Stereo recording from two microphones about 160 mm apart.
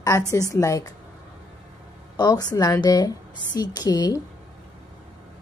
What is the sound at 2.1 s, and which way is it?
A woman's voice, 25° left (ahead or behind).